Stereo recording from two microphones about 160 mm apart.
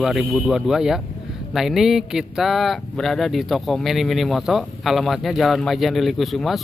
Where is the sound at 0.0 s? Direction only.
Centre (ahead or behind).